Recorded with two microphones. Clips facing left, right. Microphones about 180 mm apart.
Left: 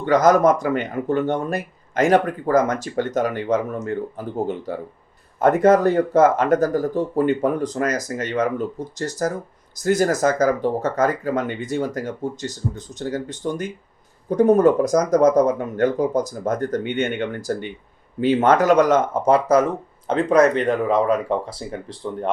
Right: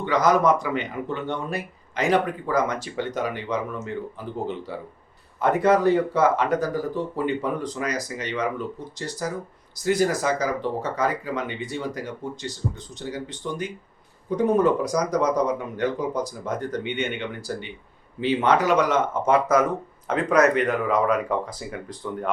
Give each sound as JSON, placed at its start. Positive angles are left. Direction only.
{"t": 0.0, "sound": "speech", "side_deg": 45}